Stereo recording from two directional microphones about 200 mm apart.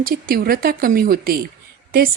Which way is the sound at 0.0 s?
45° right (ahead or behind).